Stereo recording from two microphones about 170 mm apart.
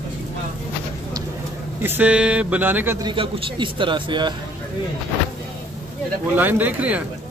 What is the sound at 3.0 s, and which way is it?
A man's voice, 30° right (ahead or behind).